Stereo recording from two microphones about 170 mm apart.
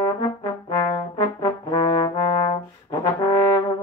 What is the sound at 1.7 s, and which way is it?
Trombone, 30° left (ahead or behind).